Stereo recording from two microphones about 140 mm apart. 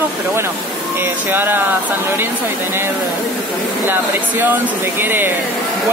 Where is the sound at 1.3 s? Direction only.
15° right (ahead or behind).